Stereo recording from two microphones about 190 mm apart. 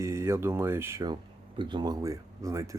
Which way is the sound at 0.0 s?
15° right (ahead or behind).